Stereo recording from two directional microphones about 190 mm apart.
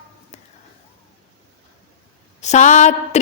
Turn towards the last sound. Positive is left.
turn(degrees=40)  # may be behind; listen again after turning